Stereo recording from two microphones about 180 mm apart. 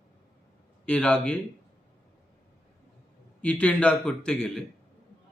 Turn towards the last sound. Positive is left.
turn(degrees=5)  # may be behind; listen again after turning